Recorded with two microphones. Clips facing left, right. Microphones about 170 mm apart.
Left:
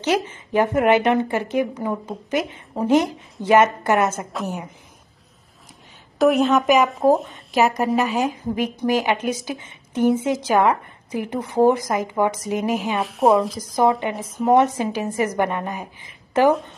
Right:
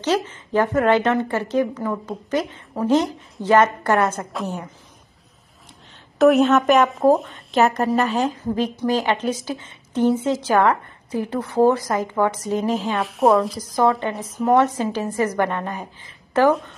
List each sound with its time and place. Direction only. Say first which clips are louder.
0.0 s a woman's voice: even; 10° left (ahead or behind)
6.1 s a woman's voice: right 2 dB; centre (ahead or behind)
8.0 s a woman's voice: right 1 dB; 15° left (ahead or behind)
12.9 s a woman's voice: even; centre (ahead or behind)
13.7 s a woman's voice: even; 20° left (ahead or behind)